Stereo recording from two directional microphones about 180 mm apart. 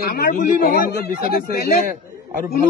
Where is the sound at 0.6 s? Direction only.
50° left (ahead or behind).